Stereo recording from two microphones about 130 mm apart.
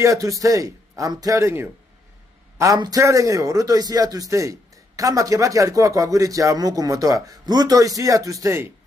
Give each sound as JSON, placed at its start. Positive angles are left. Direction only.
{"t": 0.0, "sound": "a man's voice", "side_deg": -25}